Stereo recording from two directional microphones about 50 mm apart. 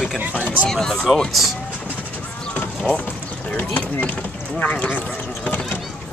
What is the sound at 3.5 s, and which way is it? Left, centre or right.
Speech, left.